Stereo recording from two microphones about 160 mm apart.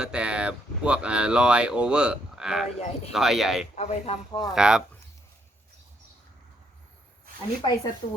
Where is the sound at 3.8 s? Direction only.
40° left (ahead or behind).